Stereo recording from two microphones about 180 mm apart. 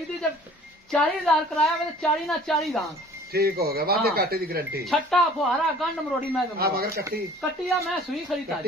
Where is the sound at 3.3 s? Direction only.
60° right (ahead or behind).